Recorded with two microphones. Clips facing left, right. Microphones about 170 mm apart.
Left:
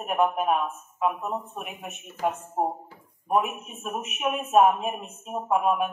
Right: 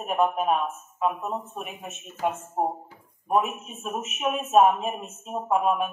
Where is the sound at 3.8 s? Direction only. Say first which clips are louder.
Right 1 dB; centre (ahead or behind).